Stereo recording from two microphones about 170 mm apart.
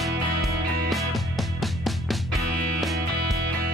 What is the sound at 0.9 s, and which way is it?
Music, centre (ahead or behind).